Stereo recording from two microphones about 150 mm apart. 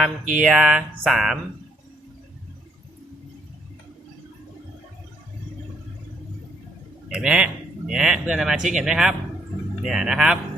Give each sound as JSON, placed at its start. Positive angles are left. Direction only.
{"t": 0.4, "sound": "speech", "side_deg": 0}
{"t": 7.1, "sound": "speech", "side_deg": -5}